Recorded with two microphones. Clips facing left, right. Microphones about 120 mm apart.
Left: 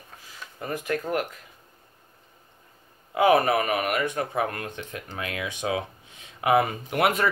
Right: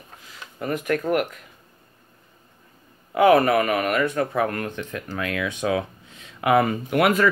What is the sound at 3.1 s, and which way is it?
Speech, 25° left (ahead or behind).